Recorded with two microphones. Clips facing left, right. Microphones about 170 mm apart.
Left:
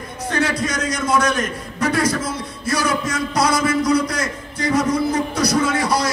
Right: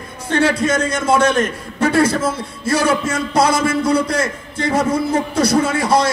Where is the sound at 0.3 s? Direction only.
30° right (ahead or behind).